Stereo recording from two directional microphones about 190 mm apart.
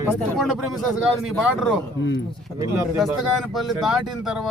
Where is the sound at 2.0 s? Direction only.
75° left (ahead or behind).